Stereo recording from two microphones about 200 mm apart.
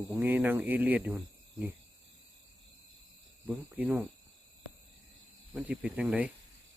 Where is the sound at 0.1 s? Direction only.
10° right (ahead or behind).